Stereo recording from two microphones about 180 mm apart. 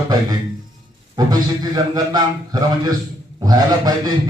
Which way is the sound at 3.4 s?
20° right (ahead or behind).